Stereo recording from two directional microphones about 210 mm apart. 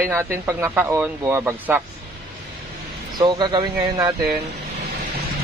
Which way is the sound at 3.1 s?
20° right (ahead or behind).